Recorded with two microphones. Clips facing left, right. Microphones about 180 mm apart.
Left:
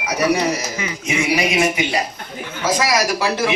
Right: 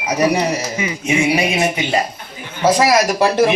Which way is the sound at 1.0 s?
30° right (ahead or behind).